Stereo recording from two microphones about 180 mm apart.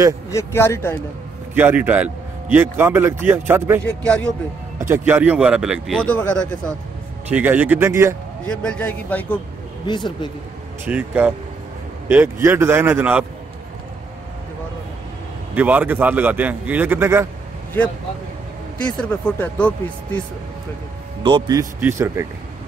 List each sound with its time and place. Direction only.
0.3 s a man's voice: 15° left (ahead or behind)
1.5 s a man's voice: 10° right (ahead or behind)
3.8 s a man's voice: 5° left (ahead or behind)
4.7 s speech: 15° right (ahead or behind); by 6.7 s 10° left (ahead or behind)
7.2 s a man's voice: 10° right (ahead or behind)
8.5 s a man's voice: 5° left (ahead or behind)
9.8 s speech: 25° left (ahead or behind)
10.9 s a man's voice: 10° right (ahead or behind)
15.5 s a man's voice: 10° right (ahead or behind)
18.9 s a man's voice: 5° left (ahead or behind)
21.2 s a man's voice: 25° right (ahead or behind)